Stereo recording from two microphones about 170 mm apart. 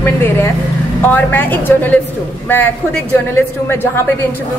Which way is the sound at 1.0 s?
10° left (ahead or behind).